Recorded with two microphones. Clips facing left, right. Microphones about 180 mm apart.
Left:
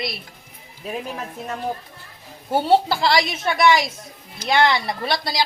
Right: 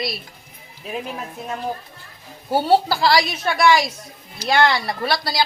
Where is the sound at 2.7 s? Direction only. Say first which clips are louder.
Right 1 dB; 25° left (ahead or behind).